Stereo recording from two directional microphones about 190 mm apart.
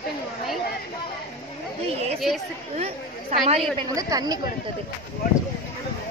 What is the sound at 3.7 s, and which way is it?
Speech, 20° right (ahead or behind).